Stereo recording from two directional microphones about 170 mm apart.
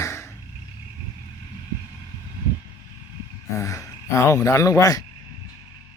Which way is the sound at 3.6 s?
15° left (ahead or behind).